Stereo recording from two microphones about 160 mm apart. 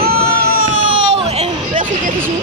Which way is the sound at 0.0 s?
70° right (ahead or behind).